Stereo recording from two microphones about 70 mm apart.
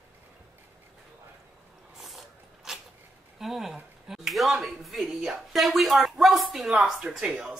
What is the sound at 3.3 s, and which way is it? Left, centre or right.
Speech, centre.